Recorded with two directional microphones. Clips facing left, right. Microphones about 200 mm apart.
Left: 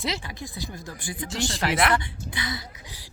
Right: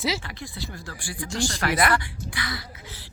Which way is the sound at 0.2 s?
15° left (ahead or behind).